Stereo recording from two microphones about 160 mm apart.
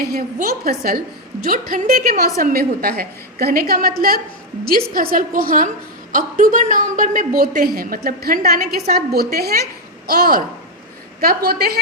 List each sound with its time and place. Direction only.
0.0 s a woman's voice: 65° right (ahead or behind)
1.5 s a woman's voice: 60° right (ahead or behind); by 11.8 s 75° right (ahead or behind)